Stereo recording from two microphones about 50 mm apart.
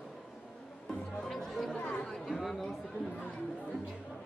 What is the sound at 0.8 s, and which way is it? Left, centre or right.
Music, centre.